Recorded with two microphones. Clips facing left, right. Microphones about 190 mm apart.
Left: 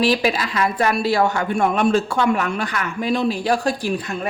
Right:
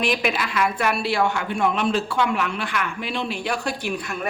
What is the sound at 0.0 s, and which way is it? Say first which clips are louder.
A woman's voice: left 5 dB; 35° left (ahead or behind).